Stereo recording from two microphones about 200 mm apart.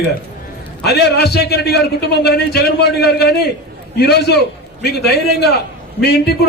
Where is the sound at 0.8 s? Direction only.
55° left (ahead or behind).